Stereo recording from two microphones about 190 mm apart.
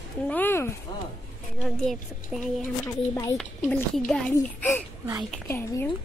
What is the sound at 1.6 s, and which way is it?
Speech, centre (ahead or behind).